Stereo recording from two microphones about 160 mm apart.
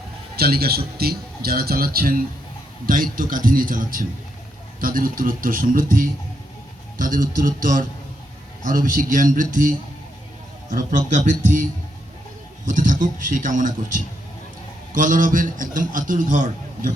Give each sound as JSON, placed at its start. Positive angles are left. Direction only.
{"t": 0.3, "sound": "a man's voice", "side_deg": -75}